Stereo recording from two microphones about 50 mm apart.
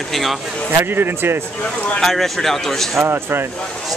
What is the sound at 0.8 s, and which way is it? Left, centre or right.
Speech, right.